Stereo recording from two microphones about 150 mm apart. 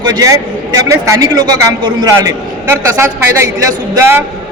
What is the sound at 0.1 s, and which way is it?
A man's voice, 25° right (ahead or behind).